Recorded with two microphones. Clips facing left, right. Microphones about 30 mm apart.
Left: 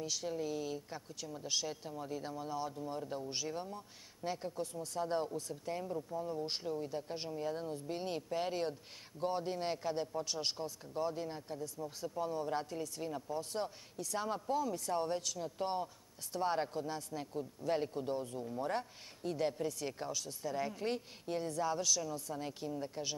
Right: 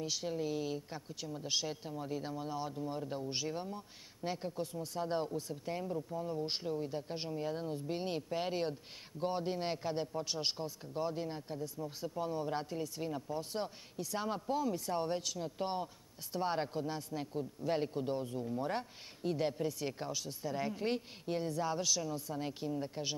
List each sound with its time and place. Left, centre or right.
0.0 s speech: centre